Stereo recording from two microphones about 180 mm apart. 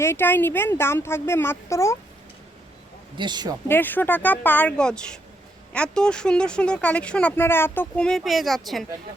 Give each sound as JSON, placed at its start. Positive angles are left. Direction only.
{"t": 0.0, "sound": "a woman's voice", "side_deg": 15}
{"t": 3.2, "sound": "speech", "side_deg": -25}
{"t": 3.7, "sound": "a woman's voice", "side_deg": 10}